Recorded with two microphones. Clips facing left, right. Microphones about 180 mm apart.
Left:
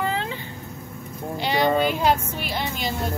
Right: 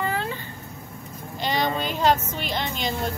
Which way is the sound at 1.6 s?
55° left (ahead or behind).